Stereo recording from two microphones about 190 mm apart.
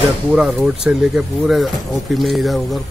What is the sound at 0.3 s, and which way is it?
A man's voice, 5° right (ahead or behind).